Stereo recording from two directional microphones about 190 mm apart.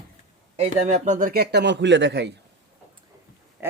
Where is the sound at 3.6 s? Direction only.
10° right (ahead or behind).